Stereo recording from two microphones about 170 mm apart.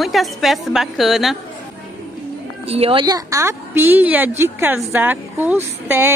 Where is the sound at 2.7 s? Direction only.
35° right (ahead or behind); by 6.1 s 15° right (ahead or behind).